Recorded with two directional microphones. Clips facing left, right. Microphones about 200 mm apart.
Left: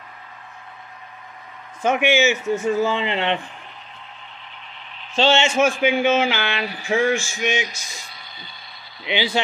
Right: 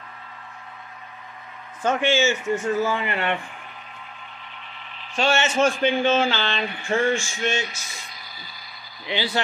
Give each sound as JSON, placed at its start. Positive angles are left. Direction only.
{"t": 1.8, "sound": "speech", "side_deg": 10}
{"t": 5.1, "sound": "a man's voice", "side_deg": 25}
{"t": 5.4, "sound": "speech", "side_deg": 10}
{"t": 8.1, "sound": "a sound", "side_deg": 25}
{"t": 9.0, "sound": "speech", "side_deg": 15}